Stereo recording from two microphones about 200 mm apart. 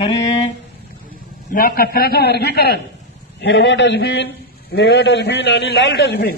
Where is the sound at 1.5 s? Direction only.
50° left (ahead or behind).